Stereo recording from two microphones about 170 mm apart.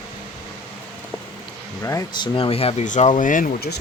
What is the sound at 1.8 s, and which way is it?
Speech, 20° left (ahead or behind).